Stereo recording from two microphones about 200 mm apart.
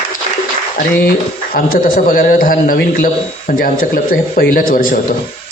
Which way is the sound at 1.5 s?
45° left (ahead or behind).